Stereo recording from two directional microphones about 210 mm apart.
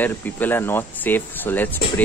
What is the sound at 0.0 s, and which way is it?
Speech, 10° left (ahead or behind).